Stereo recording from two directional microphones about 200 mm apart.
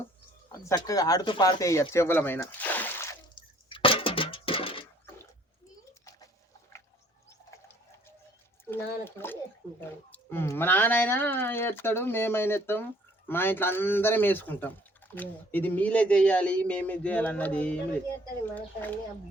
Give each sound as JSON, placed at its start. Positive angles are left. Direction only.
{"t": 0.6, "sound": "speech", "side_deg": 15}
{"t": 3.3, "sound": "a sound", "side_deg": 25}
{"t": 8.7, "sound": "speech", "side_deg": 10}